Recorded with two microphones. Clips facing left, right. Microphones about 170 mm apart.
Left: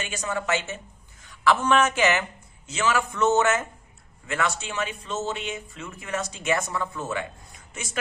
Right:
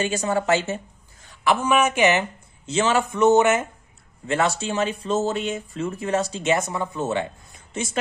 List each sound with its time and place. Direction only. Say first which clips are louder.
0.0 s speech: right 7 dB; 35° right (ahead or behind)
1.4 s speech: right 1 dB; 15° right (ahead or behind)
2.6 s speech: right 4 dB; 30° right (ahead or behind)
4.3 s speech: right 6 dB; 30° right (ahead or behind)